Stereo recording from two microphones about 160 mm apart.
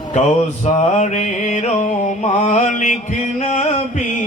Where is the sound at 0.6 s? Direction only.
45° left (ahead or behind).